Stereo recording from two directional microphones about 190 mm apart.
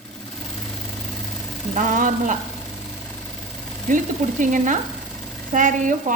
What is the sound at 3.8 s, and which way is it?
A woman's voice, 45° right (ahead or behind).